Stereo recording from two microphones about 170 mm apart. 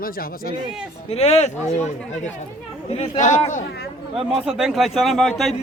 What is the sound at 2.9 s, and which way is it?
Speech, 40° left (ahead or behind).